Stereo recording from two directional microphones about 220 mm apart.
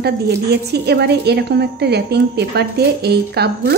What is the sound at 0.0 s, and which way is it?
A woman's voice, 50° right (ahead or behind).